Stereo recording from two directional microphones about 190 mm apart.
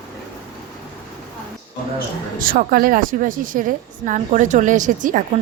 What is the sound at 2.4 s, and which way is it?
A woman's voice, 50° right (ahead or behind).